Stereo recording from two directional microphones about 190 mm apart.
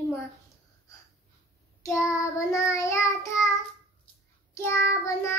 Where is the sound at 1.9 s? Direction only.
15° left (ahead or behind).